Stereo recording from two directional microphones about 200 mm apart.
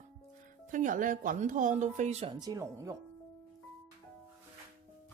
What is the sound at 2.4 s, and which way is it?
Speech, 15° right (ahead or behind).